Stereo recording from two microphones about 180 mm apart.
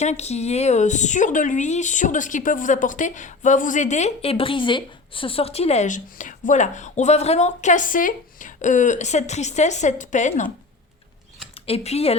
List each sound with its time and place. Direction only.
0.0 s speech: 40° left (ahead or behind)
11.6 s speech: 35° left (ahead or behind)